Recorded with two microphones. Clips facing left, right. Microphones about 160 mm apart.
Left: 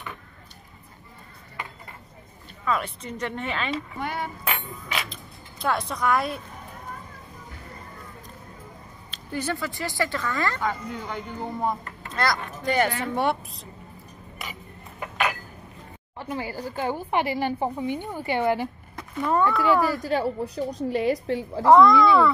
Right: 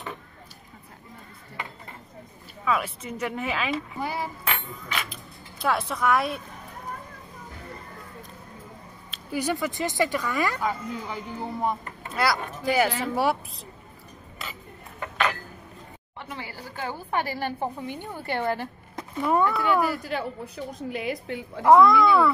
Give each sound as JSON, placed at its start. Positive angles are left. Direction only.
{"t": 2.6, "sound": "speech", "side_deg": -5}
{"t": 9.1, "sound": "speech", "side_deg": -10}
{"t": 14.4, "sound": "a sound", "side_deg": 15}
{"t": 16.5, "sound": "a sound", "side_deg": 15}
{"t": 16.8, "sound": "a woman's voice", "side_deg": 15}
{"t": 19.2, "sound": "speech", "side_deg": -10}
{"t": 20.0, "sound": "a woman's voice", "side_deg": 35}
{"t": 21.6, "sound": "speech", "side_deg": -5}